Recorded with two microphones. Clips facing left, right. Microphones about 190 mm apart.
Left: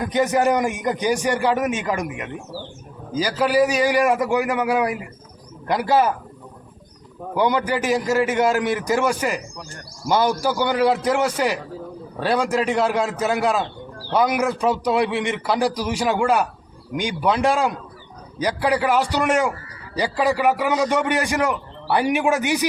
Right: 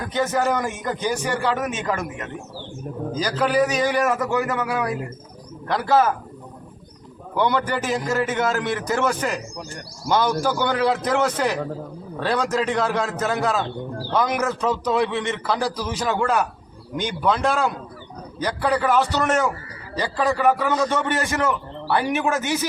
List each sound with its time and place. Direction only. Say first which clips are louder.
0.0 s a man's voice: left 3 dB; 15° left (ahead or behind)
7.3 s a man's voice: left 1 dB; 10° left (ahead or behind)